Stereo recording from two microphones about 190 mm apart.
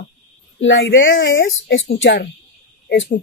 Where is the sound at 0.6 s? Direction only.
80° left.